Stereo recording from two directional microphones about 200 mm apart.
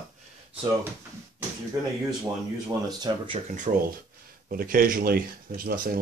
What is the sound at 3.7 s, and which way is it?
Speech, 35° right (ahead or behind).